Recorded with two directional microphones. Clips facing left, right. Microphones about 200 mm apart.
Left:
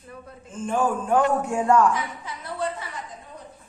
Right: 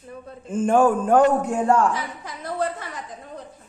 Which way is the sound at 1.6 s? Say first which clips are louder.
Left 2 dB; 35° right (ahead or behind).